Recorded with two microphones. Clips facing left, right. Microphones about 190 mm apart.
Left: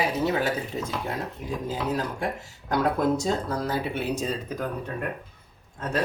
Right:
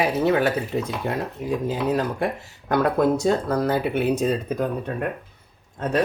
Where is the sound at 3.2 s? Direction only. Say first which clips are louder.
Right 6 dB; 60° right (ahead or behind).